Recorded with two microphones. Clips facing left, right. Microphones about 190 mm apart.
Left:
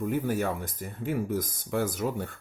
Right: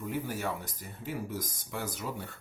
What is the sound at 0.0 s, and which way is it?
Speech, 50° left (ahead or behind).